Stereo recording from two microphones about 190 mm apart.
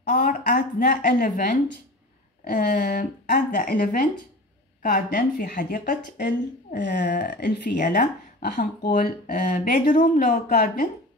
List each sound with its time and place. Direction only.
0.1 s speech: 45° left (ahead or behind); by 7.8 s 60° left (ahead or behind)
7.8 s speech: 50° left (ahead or behind)